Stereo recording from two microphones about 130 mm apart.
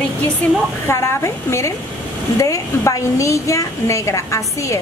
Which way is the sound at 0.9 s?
20° left (ahead or behind).